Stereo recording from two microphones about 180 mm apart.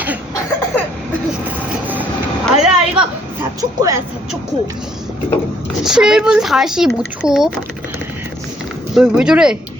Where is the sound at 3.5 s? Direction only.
20° right (ahead or behind).